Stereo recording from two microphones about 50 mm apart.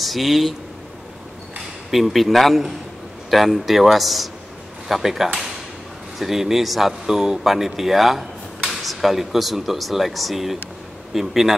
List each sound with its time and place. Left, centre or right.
0.0 s speech: centre
1.9 s speech: centre